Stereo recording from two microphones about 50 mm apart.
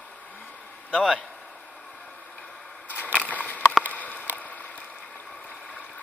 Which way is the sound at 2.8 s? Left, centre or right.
Left.